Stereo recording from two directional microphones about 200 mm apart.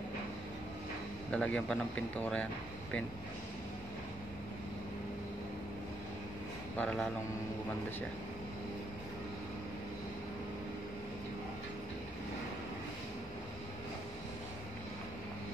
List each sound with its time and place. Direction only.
1.3 s speech: 5° left (ahead or behind)
6.8 s speech: 5° left (ahead or behind)